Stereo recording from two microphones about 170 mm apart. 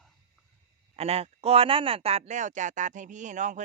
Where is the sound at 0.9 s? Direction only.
35° right (ahead or behind).